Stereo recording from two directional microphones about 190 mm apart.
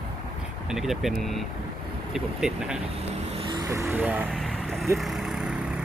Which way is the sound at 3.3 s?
25° right (ahead or behind).